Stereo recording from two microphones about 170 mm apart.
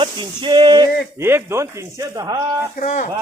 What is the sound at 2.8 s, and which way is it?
Speech, 50° left (ahead or behind).